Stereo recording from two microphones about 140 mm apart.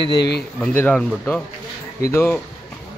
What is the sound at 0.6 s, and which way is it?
Speech, 10° left (ahead or behind).